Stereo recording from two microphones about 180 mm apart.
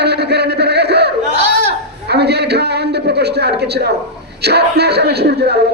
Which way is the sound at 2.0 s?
65° right (ahead or behind).